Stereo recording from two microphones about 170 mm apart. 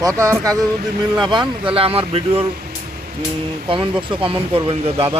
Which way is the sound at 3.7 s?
30° right (ahead or behind).